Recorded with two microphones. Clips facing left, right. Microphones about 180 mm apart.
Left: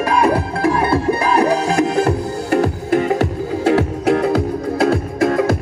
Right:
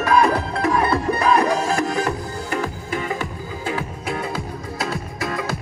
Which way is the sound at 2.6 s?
60° left (ahead or behind).